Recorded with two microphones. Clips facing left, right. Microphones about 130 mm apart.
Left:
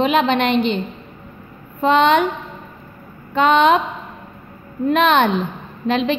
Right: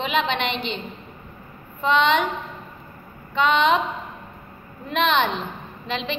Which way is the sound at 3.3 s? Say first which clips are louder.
Left 5 dB; 45° left (ahead or behind).